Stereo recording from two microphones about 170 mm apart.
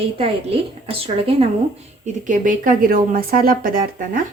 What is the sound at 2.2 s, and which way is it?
A woman's voice, 50° right (ahead or behind).